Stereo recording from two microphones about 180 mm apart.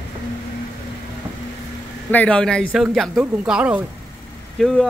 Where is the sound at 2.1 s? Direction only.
5° left (ahead or behind).